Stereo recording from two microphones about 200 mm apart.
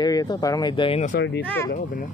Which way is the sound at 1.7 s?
45° left (ahead or behind).